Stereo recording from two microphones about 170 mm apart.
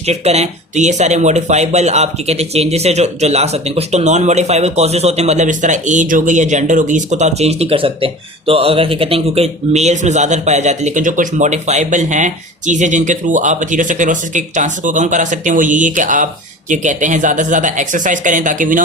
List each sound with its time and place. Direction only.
0.0 s speech: 40° right (ahead or behind)